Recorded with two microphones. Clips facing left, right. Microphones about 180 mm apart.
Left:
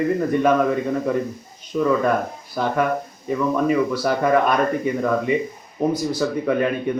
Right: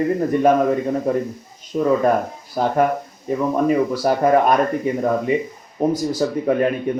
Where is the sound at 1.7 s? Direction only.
35° right (ahead or behind).